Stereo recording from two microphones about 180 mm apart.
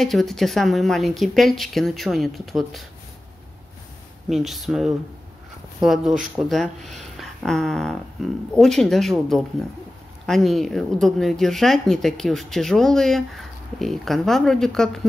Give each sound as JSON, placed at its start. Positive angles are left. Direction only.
{"t": 0.0, "sound": "speech", "side_deg": 0}
{"t": 4.3, "sound": "speech", "side_deg": 0}